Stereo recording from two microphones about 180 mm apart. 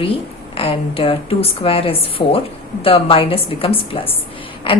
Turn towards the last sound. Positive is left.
turn(degrees=30)  # may be behind; listen again after turning